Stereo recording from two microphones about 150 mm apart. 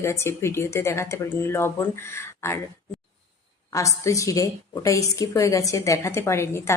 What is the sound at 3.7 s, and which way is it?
A woman's voice, 20° left (ahead or behind).